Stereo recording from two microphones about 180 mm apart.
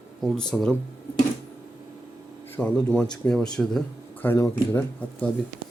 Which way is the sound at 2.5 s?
5° left (ahead or behind).